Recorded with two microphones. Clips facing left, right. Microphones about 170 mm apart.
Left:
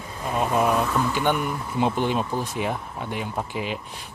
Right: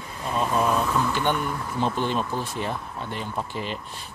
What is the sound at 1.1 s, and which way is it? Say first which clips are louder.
Speech: left 2 dB; 10° left (ahead or behind).